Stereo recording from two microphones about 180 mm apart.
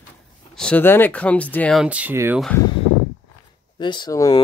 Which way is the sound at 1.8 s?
10° right (ahead or behind).